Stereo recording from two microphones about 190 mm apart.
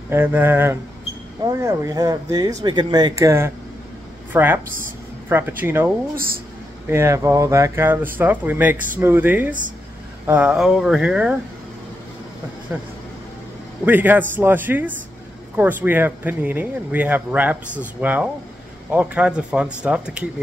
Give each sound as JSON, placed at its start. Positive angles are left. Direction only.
{"t": 0.1, "sound": "speech", "side_deg": -10}
{"t": 6.1, "sound": "a woman's voice", "side_deg": -50}
{"t": 6.9, "sound": "speech", "side_deg": -15}
{"t": 13.8, "sound": "speech", "side_deg": -10}